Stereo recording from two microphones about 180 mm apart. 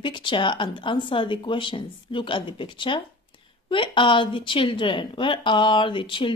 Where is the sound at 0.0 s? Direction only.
25° left (ahead or behind).